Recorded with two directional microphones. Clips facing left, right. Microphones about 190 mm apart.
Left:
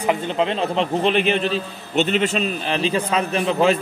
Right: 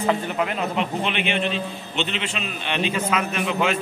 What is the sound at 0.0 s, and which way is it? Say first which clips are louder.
A man's voice: left 2 dB; 20° left (ahead or behind).